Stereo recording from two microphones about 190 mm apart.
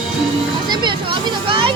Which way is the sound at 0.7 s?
25° right (ahead or behind).